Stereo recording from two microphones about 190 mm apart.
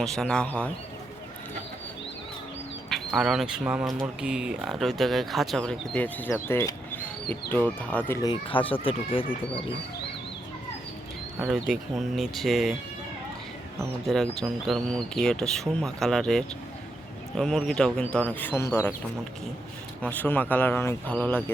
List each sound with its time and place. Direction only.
0.0 s speech: centre (ahead or behind)
2.9 s speech: centre (ahead or behind); by 9.2 s 30° left (ahead or behind)
11.5 s speech: centre (ahead or behind)
14.1 s speech: centre (ahead or behind)
20.0 s speech: 10° left (ahead or behind)